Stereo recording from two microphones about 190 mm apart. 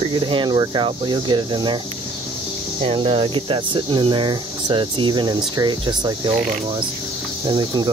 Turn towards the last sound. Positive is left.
turn(degrees=-25)  # may be behind; listen again after turning